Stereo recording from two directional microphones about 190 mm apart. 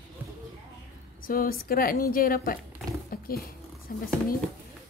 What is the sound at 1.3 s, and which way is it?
A woman's voice, 50° left (ahead or behind).